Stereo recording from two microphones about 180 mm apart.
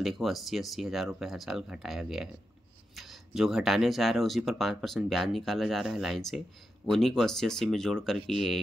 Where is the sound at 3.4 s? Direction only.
Centre (ahead or behind).